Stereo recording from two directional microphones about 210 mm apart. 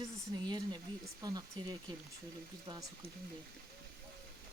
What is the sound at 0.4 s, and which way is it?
Speech, 20° right (ahead or behind).